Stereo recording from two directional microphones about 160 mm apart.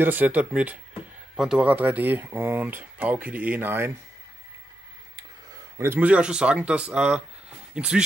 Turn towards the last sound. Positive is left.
turn(degrees=-5)  # may be behind; listen again after turning